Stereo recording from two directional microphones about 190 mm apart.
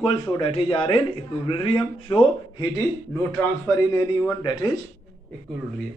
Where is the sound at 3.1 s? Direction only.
15° left (ahead or behind).